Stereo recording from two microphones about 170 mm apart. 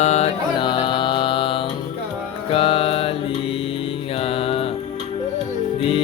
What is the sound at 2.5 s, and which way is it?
Music, 35° left (ahead or behind).